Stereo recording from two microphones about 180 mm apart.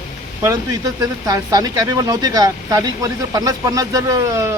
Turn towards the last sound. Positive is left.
turn(degrees=-15)  # may be behind; listen again after turning